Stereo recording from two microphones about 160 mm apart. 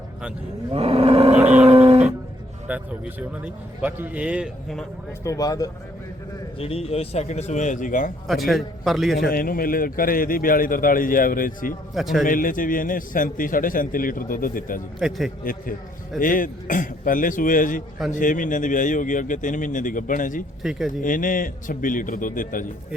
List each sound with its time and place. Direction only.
0.7 s a sound: 40° right (ahead or behind)
2.6 s a man's voice: 10° right (ahead or behind)
5.2 s speech: 20° left (ahead or behind)
6.6 s a man's voice: 40° left (ahead or behind); by 8.1 s 55° left (ahead or behind)
8.3 s a man's voice: centre (ahead or behind)
9.1 s a man's voice: 70° left (ahead or behind)
11.9 s a man's voice: centre (ahead or behind)
12.2 s a man's voice: 60° left (ahead or behind)
14.9 s a man's voice: centre (ahead or behind)
16.2 s a man's voice: 60° left (ahead or behind)
20.6 s a man's voice: centre (ahead or behind)
21.0 s a man's voice: 55° left (ahead or behind)